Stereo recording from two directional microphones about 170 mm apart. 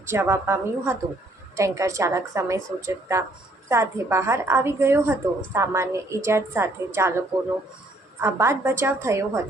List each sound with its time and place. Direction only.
0.1 s speech: 15° right (ahead or behind)